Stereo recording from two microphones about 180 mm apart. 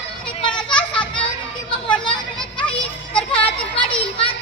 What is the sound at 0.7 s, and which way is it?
Children playing, 5° left (ahead or behind).